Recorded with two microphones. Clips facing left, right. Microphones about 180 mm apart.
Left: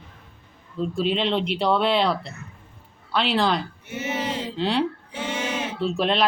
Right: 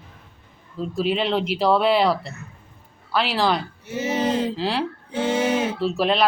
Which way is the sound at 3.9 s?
35° right (ahead or behind).